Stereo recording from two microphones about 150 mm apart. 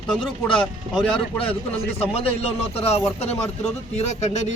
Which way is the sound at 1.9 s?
40° left (ahead or behind).